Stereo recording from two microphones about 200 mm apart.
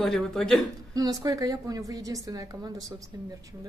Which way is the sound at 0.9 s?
20° right (ahead or behind).